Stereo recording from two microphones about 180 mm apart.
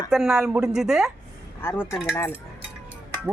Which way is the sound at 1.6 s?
15° left (ahead or behind).